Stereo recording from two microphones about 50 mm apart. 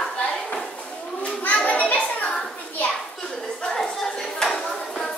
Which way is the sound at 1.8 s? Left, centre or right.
Left.